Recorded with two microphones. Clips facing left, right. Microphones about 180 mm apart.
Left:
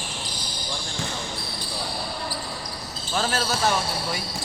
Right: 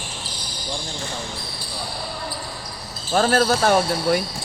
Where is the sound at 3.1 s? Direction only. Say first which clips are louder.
Right 8 dB; 50° right (ahead or behind).